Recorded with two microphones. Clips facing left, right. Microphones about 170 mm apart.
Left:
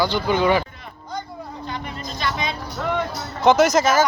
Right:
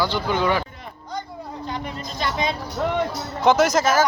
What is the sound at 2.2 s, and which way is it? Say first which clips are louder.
Music: right 2 dB; 45° right (ahead or behind).